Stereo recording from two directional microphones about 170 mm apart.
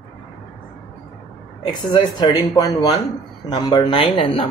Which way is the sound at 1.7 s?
25° left (ahead or behind).